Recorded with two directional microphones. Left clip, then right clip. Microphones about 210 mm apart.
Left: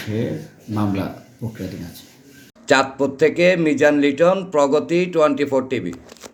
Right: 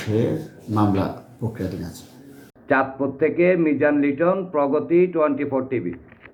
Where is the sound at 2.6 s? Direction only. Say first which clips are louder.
Left 4 dB; 45° left (ahead or behind).